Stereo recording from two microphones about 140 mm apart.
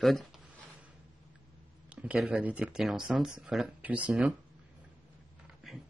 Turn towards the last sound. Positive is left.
turn(degrees=-10)  # may be behind; listen again after turning